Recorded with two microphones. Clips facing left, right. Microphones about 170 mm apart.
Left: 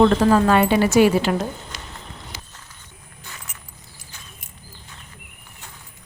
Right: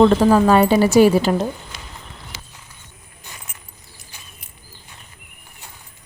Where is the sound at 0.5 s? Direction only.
35° right (ahead or behind).